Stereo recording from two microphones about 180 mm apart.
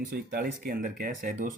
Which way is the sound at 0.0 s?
55° right (ahead or behind).